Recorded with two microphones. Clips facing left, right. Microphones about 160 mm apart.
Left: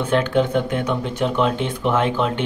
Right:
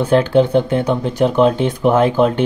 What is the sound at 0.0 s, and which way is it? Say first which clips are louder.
Speech: right 6 dB; 35° right (ahead or behind).